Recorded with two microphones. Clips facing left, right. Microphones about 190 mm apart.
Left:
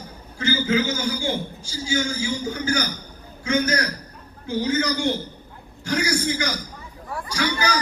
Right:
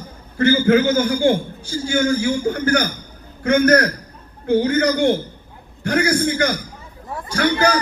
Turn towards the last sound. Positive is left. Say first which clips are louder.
# right 7 dB
turn(degrees=-55)  # may be behind; listen again after turning